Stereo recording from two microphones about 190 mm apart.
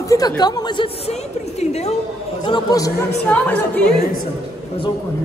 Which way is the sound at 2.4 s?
20° left (ahead or behind).